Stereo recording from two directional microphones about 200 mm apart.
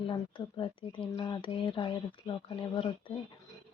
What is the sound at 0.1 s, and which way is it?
Speech, 25° left (ahead or behind).